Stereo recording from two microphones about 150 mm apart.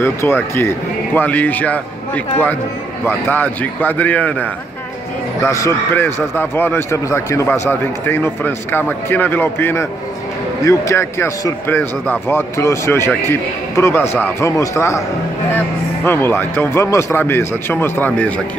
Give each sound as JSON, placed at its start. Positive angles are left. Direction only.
{"t": 0.0, "sound": "a man's voice", "side_deg": 15}